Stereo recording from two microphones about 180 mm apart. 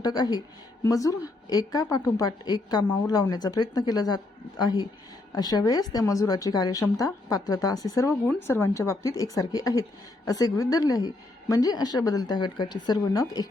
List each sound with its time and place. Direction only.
0.0 s a woman's voice: 20° left (ahead or behind)